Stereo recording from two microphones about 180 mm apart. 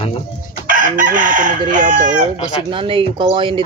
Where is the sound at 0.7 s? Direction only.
50° right (ahead or behind).